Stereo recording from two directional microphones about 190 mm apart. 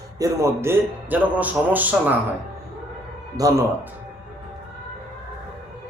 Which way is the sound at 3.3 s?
20° right (ahead or behind).